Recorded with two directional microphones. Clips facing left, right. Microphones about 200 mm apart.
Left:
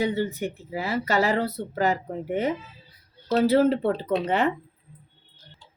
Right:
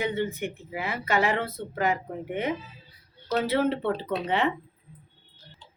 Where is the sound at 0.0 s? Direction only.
35° left (ahead or behind).